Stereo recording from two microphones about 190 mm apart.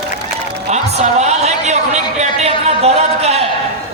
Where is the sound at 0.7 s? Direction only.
35° right (ahead or behind).